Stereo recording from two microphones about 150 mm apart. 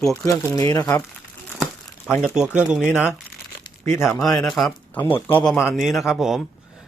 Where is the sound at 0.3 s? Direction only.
20° left (ahead or behind).